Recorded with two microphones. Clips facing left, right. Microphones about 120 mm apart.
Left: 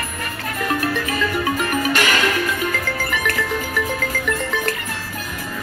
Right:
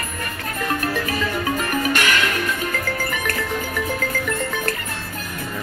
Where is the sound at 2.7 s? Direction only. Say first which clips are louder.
Left 1 dB; 40° right (ahead or behind).